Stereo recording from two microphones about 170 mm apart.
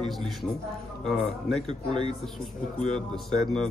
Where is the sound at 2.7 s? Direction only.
5° left (ahead or behind).